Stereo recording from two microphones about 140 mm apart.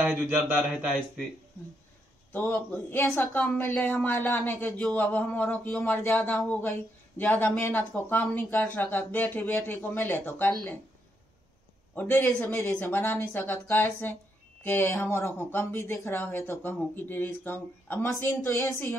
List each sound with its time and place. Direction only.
0.0 s a man's voice: 5° right (ahead or behind)
2.7 s speech: 15° left (ahead or behind)
4.6 s speech: 5° left (ahead or behind)
11.9 s speech: 15° left (ahead or behind)